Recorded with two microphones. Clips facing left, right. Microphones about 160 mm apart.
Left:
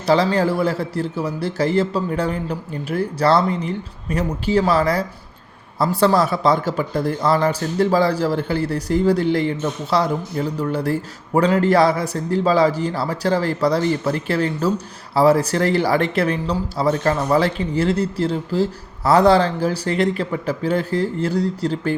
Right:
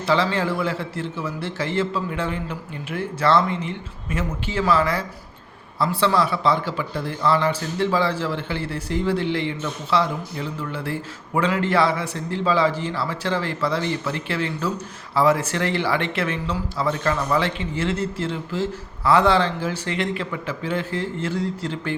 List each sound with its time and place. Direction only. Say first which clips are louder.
0.0 s a man's voice: left 5 dB; 40° left (ahead or behind)